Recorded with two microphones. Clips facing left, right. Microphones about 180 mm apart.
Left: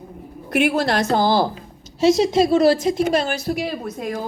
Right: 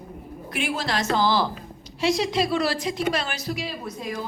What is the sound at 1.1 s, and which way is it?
A woman's voice, 50° left (ahead or behind).